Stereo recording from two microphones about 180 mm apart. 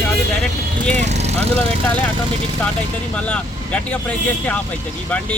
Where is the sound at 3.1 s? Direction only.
5° left (ahead or behind).